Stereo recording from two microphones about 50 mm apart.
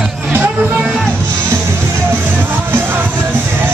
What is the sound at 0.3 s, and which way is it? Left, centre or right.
Music, right.